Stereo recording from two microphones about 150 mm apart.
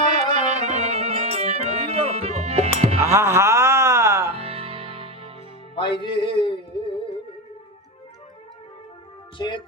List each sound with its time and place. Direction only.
0.0 s music: 50° right (ahead or behind)
3.0 s music: 20° right (ahead or behind)
4.4 s music: 40° right (ahead or behind)
5.7 s music: 30° left (ahead or behind)
9.4 s speech: 30° left (ahead or behind)